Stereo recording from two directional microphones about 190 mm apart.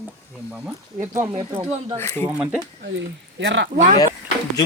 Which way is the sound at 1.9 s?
10° left (ahead or behind).